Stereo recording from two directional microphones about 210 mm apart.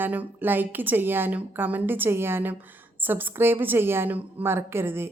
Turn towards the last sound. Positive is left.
turn(degrees=-10)  # may be behind; listen again after turning